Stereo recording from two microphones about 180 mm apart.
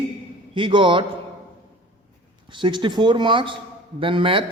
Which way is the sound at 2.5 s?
25° right (ahead or behind).